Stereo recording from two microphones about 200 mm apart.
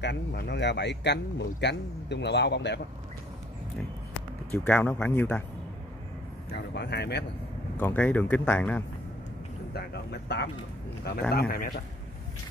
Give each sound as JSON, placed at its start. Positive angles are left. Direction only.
{"t": 0.0, "sound": "speech", "side_deg": 55}
{"t": 4.5, "sound": "speech", "side_deg": 10}
{"t": 6.5, "sound": "speech", "side_deg": 55}
{"t": 7.8, "sound": "speech", "side_deg": 10}
{"t": 9.8, "sound": "a man's voice", "side_deg": 55}